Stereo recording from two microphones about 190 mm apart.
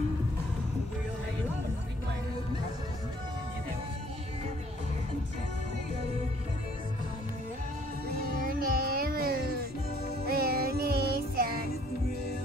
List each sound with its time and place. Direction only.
8.2 s music: 50° right (ahead or behind)